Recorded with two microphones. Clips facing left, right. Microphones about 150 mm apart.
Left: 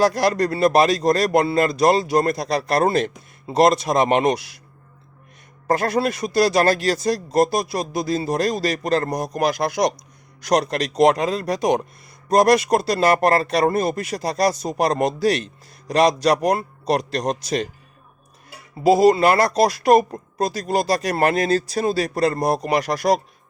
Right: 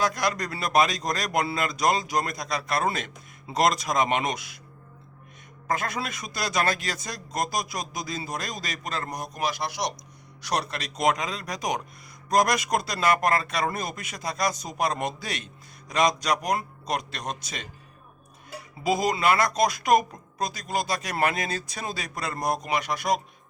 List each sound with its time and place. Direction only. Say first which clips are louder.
0.0 s speech: left 9 dB; 35° left (ahead or behind)
5.6 s speech: left 10 dB; 35° left (ahead or behind); by 9.8 s 50° left (ahead or behind)
10.9 s speech: left 9 dB; 35° left (ahead or behind)
18.9 s speech: left 7 dB; 30° left (ahead or behind)